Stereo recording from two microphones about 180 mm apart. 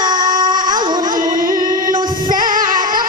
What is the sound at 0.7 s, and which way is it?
Music, 25° right (ahead or behind).